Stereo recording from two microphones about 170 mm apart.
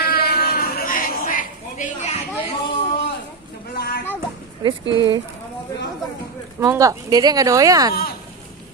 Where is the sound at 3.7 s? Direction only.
75° left (ahead or behind).